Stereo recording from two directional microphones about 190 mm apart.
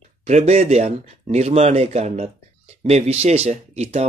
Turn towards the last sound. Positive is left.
turn(degrees=-35)  # may be behind; listen again after turning